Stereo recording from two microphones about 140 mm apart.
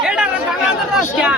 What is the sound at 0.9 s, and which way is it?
Speech, 10° right (ahead or behind).